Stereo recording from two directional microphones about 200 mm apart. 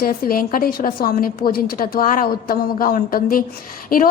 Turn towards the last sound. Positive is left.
turn(degrees=45)  # may be behind; listen again after turning